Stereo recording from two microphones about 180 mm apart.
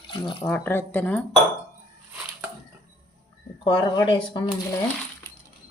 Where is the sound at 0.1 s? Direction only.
30° left (ahead or behind).